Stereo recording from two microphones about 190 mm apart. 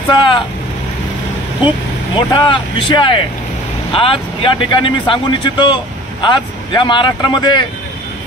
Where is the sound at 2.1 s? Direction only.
25° left (ahead or behind).